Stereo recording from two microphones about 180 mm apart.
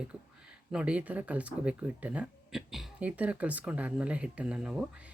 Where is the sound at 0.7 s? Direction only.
5° right (ahead or behind).